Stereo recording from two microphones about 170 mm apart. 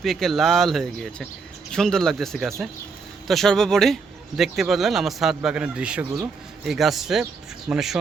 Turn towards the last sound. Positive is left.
turn(degrees=-5)  # may be behind; listen again after turning